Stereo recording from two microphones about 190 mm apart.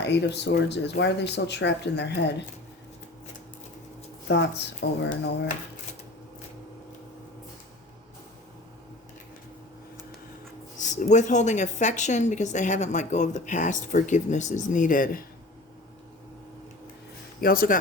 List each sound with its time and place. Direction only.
0.0 s speech: 65° left (ahead or behind)
4.3 s speech: 65° left (ahead or behind)
10.8 s speech: 40° left (ahead or behind)
17.4 s speech: 50° left (ahead or behind)